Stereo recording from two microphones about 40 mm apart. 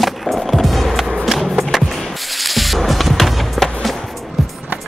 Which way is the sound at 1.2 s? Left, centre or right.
Centre.